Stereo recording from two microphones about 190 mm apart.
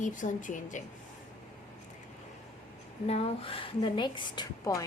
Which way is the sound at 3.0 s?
30° left (ahead or behind).